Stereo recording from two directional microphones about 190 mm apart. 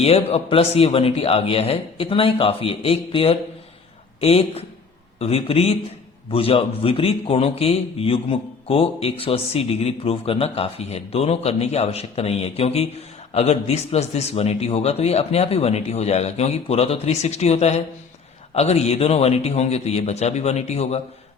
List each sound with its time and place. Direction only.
0.0 s a man's voice: 30° left (ahead or behind)